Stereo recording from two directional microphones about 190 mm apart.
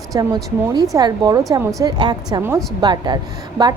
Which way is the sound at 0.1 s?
20° right (ahead or behind).